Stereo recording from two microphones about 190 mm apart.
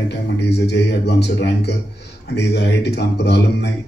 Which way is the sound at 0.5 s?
65° left (ahead or behind).